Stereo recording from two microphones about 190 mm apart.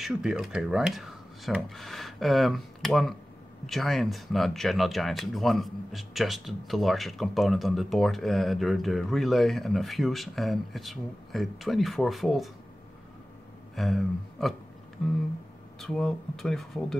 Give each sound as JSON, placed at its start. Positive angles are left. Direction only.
{"t": 0.0, "sound": "speech", "side_deg": -5}
{"t": 13.7, "sound": "speech", "side_deg": 0}